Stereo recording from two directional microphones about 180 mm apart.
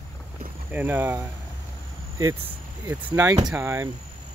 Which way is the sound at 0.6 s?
10° right (ahead or behind).